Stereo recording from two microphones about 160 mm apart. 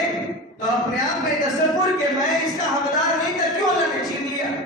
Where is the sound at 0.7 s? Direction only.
Centre (ahead or behind).